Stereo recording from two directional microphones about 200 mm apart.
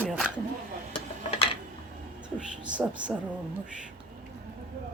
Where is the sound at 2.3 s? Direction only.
5° right (ahead or behind).